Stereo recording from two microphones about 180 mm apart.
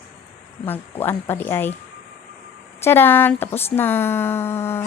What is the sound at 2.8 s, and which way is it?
Speech, 10° left (ahead or behind).